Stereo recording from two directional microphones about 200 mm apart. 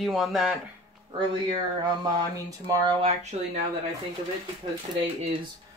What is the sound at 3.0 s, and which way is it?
Speech, 35° right (ahead or behind).